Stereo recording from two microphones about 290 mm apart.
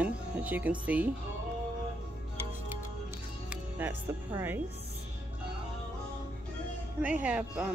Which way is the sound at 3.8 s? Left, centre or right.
Centre.